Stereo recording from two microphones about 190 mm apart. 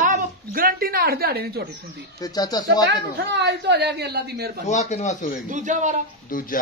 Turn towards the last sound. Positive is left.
turn(degrees=45)  # may be behind; listen again after turning